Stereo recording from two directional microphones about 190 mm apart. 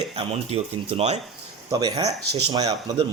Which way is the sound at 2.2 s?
60° right (ahead or behind).